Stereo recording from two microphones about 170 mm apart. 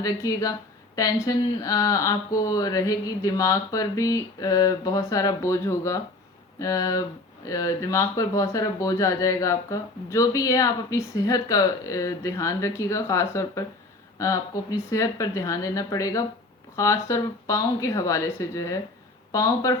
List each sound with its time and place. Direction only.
0.0 s speech: 20° left (ahead or behind)